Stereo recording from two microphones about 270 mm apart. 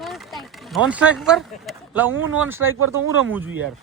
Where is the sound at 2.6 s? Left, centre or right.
Right.